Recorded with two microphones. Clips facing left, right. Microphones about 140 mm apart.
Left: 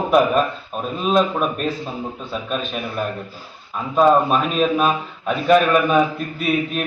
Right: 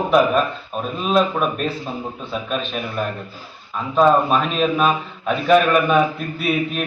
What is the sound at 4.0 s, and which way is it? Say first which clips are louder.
A man's voice: even; 5° left (ahead or behind).